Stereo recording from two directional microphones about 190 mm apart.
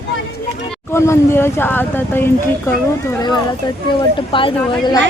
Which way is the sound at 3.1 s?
20° left (ahead or behind).